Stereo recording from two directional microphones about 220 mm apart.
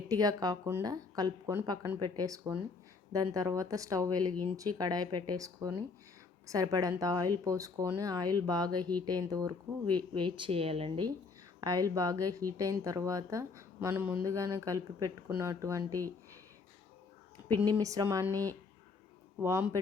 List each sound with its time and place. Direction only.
0.1 s speech: 15° right (ahead or behind)
17.7 s speech: 15° right (ahead or behind)